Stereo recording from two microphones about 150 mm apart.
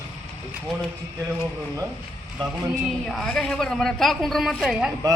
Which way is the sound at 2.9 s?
Centre (ahead or behind).